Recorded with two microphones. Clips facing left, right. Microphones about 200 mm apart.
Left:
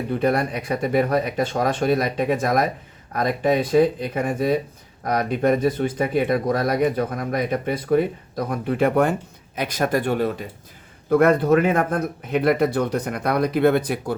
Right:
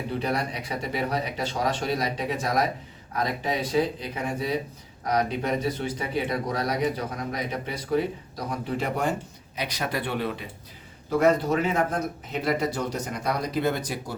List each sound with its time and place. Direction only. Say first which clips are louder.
0.1 s speech: left 8 dB; 50° left (ahead or behind)
11.1 s speech: left 6 dB; 55° left (ahead or behind)